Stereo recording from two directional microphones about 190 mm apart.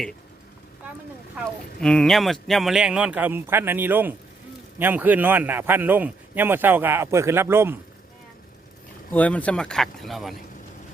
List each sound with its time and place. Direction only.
1.8 s a man's voice: 5° left (ahead or behind); by 7.8 s 15° right (ahead or behind)
9.1 s a man's voice: 10° left (ahead or behind)